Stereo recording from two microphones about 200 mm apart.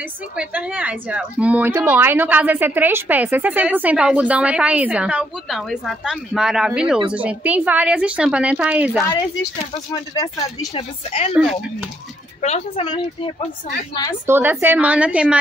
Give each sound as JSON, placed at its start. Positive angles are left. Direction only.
{"t": 0.4, "sound": "speech", "side_deg": -10}
{"t": 9.0, "sound": "speech", "side_deg": 15}
{"t": 10.7, "sound": "a woman's voice", "side_deg": 30}
{"t": 12.4, "sound": "a woman's voice", "side_deg": 35}
{"t": 14.2, "sound": "speech", "side_deg": -10}